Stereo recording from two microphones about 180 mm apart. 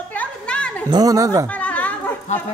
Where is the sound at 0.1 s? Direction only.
5° left (ahead or behind).